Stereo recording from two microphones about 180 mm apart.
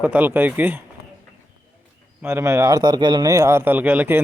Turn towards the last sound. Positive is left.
turn(degrees=-10)  # may be behind; listen again after turning